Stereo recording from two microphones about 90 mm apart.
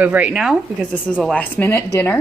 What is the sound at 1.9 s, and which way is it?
Speech, 25° left (ahead or behind).